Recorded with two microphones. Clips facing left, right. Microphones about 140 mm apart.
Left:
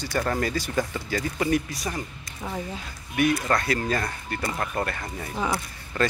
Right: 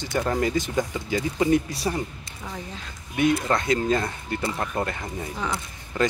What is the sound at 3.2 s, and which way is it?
Speech, 20° right (ahead or behind).